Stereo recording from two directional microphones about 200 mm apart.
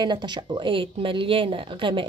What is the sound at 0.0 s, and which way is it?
Speech, 20° right (ahead or behind).